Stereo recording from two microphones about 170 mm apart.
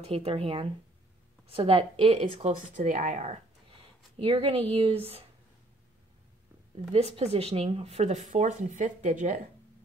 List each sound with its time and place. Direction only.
0.0 s speech: 35° right (ahead or behind)
2.5 s speech: 50° right (ahead or behind)
4.2 s speech: 35° right (ahead or behind)
6.9 s speech: 35° right (ahead or behind)